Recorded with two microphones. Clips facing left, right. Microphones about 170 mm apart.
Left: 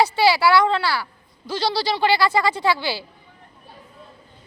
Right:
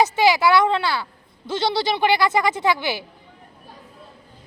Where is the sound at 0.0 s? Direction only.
20° right (ahead or behind).